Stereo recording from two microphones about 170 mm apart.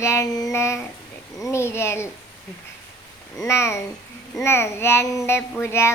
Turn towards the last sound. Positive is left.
turn(degrees=15)  # may be behind; listen again after turning